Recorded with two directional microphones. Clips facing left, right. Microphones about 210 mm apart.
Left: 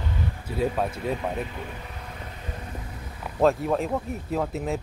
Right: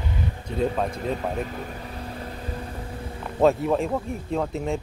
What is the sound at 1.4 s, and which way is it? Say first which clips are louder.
Vehicle: right 3 dB; 40° right (ahead or behind).